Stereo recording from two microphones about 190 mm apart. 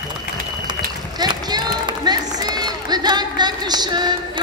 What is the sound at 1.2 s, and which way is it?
Run, 20° right (ahead or behind).